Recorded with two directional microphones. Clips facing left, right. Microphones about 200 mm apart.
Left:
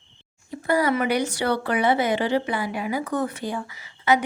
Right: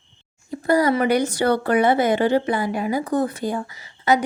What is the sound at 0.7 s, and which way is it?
A woman's voice, 40° right (ahead or behind).